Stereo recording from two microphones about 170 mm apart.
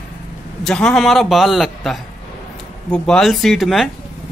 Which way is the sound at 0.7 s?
5° left (ahead or behind).